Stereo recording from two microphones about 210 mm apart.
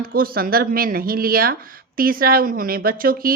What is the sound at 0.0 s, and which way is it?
Speech, 45° right (ahead or behind).